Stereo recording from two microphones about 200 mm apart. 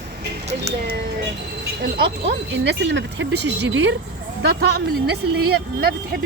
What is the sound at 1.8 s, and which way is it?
Speech, 55° right (ahead or behind).